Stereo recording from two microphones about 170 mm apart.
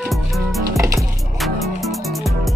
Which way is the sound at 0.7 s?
20° right (ahead or behind).